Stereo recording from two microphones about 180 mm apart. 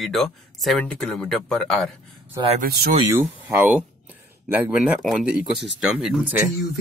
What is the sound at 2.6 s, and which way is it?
Speech, 60° right (ahead or behind).